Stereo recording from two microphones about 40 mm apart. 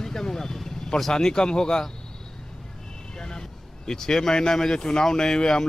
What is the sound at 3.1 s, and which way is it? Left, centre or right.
Speech, centre.